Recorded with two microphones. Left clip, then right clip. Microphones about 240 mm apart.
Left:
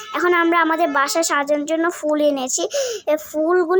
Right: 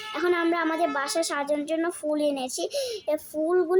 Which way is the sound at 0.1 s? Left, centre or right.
Centre.